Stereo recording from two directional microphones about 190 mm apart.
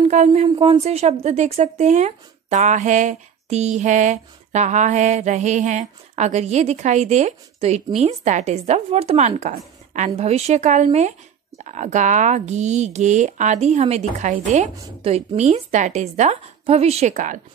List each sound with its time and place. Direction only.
0.1 s speech: 35° right (ahead or behind)